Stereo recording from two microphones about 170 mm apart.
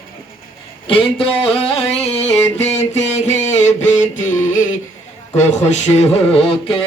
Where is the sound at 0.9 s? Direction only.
30° left (ahead or behind).